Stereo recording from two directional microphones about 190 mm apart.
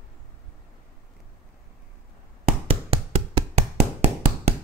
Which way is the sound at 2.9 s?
30° right (ahead or behind).